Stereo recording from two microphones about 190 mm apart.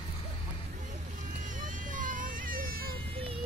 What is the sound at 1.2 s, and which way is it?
Vehicle, 40° right (ahead or behind).